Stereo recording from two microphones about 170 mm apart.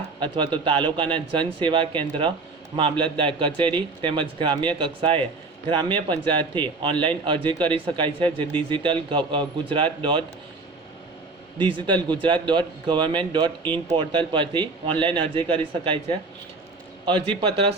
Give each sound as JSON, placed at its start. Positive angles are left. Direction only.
{"t": 0.2, "sound": "speech", "side_deg": -30}
{"t": 11.5, "sound": "speech", "side_deg": -30}
{"t": 17.1, "sound": "a man's voice", "side_deg": -35}